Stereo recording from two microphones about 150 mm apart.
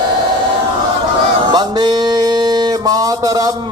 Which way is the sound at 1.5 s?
30° right (ahead or behind).